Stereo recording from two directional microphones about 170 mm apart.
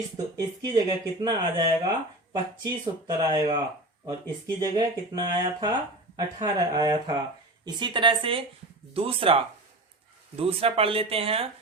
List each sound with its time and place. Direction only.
0.3 s speech: 25° right (ahead or behind)
4.6 s speech: 25° right (ahead or behind)